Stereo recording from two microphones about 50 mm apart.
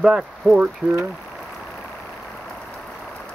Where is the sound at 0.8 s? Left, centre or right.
Right.